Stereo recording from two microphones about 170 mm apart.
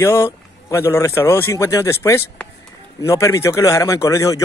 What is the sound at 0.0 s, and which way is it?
A man's voice, 15° left (ahead or behind).